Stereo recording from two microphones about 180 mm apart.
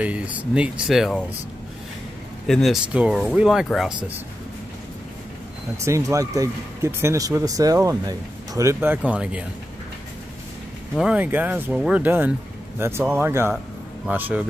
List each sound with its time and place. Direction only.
0.0 s speech: 5° right (ahead or behind)
2.4 s speech: centre (ahead or behind)
5.8 s speech: 15° right (ahead or behind)
11.0 s speech: 5° right (ahead or behind)